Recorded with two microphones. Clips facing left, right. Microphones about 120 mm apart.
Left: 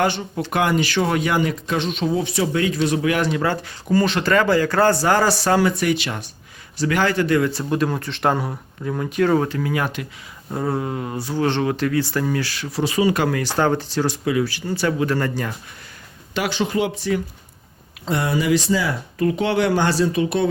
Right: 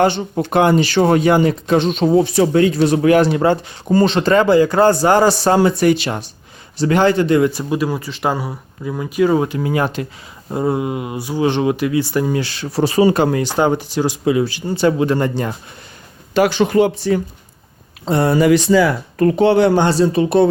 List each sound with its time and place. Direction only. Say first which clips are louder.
0.0 s speech: right 6 dB; 30° right (ahead or behind)
7.6 s speech: right 2 dB; 5° right (ahead or behind)
9.6 s speech: right 5 dB; 25° right (ahead or behind)
10.5 s speech: right 5 dB; 15° right (ahead or behind)
12.7 s speech: right 6 dB; 40° right (ahead or behind); by 15.5 s 25° right (ahead or behind)
16.3 s speech: right 8 dB; 50° right (ahead or behind)
18.0 s speech: right 7 dB; 35° right (ahead or behind); by 19.4 s 55° right (ahead or behind)
19.4 s speech: right 8 dB; 30° right (ahead or behind)